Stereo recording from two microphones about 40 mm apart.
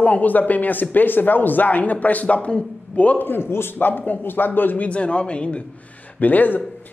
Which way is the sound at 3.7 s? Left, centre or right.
Left.